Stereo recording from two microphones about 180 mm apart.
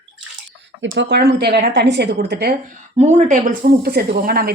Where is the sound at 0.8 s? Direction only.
80° right; by 2.5 s 60° right (ahead or behind).